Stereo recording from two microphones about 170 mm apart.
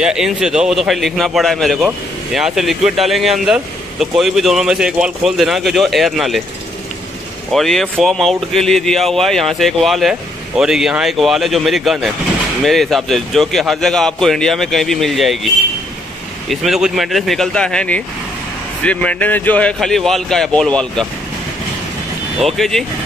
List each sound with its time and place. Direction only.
0.0 s a man's voice: 5° right (ahead or behind)
7.5 s a man's voice: centre (ahead or behind)
22.6 s a man's voice: centre (ahead or behind)